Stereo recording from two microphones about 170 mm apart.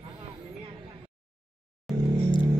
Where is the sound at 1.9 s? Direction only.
Centre (ahead or behind).